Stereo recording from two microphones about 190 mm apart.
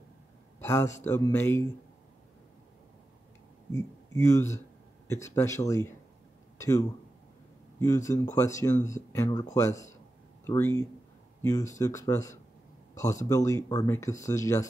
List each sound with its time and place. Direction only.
0.6 s a sound: 15° left (ahead or behind)
1.0 s speech: 10° left (ahead or behind)
3.7 s speech: 15° left (ahead or behind)
11.8 s speech: 15° left (ahead or behind)